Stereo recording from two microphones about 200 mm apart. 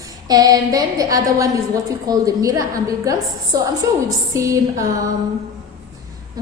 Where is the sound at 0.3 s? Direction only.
20° right (ahead or behind).